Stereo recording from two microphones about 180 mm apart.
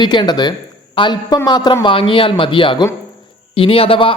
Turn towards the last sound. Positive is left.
turn(degrees=30)  # may be behind; listen again after turning